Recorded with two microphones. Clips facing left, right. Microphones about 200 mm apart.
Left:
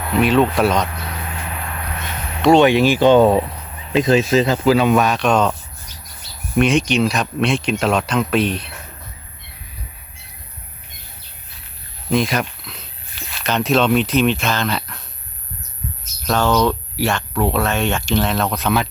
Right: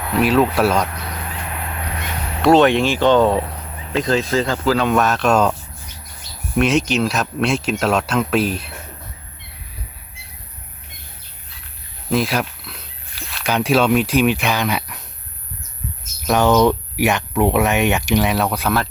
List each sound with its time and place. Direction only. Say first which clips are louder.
0.1 s speech: left 1 dB; centre (ahead or behind)
2.4 s speech: left 1 dB; centre (ahead or behind)
5.0 s speech: even; centre (ahead or behind)
12.1 s speech: left 1 dB; 5° right (ahead or behind)
16.2 s speech: right 3 dB; 20° right (ahead or behind)